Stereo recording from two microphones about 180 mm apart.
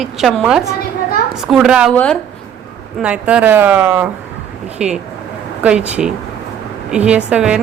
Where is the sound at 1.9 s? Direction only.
5° left (ahead or behind).